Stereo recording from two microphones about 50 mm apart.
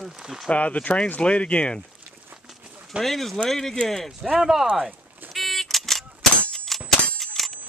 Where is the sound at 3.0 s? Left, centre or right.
Centre.